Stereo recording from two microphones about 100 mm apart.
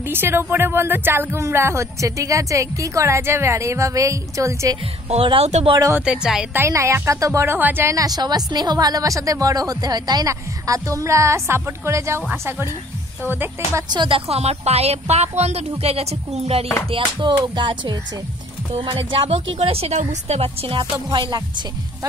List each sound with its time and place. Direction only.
0.0 s speech: 20° right (ahead or behind)
5.1 s speech: 75° right (ahead or behind)
6.0 s a woman's voice: 5° right (ahead or behind)
6.5 s speech: 25° right (ahead or behind)
7.9 s a woman's voice: 40° right (ahead or behind); by 12.6 s 25° right (ahead or behind)
13.8 s a woman's voice: 55° right (ahead or behind); by 16.6 s 85° right
16.9 s a woman's voice: 55° right (ahead or behind)